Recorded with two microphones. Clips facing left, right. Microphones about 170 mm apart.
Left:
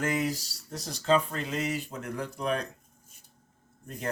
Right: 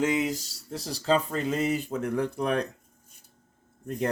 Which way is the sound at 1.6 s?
50° right (ahead or behind).